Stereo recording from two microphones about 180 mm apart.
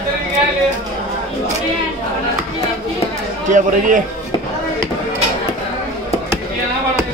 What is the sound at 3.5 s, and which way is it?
Speech, 45° right (ahead or behind).